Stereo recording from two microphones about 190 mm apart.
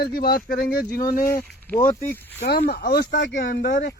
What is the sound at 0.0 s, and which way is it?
Speech, 55° left (ahead or behind).